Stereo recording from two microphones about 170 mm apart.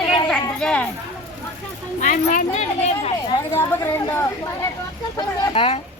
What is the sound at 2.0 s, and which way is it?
A woman's voice, 50° left (ahead or behind).